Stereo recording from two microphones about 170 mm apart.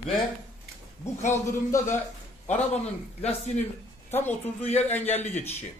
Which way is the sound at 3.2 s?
40° left (ahead or behind).